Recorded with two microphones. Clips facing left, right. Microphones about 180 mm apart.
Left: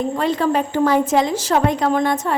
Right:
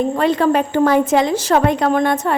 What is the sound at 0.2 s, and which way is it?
A woman's voice, 65° right (ahead or behind).